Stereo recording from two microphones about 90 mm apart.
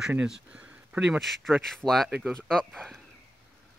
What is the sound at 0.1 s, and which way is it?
Speech, 15° right (ahead or behind).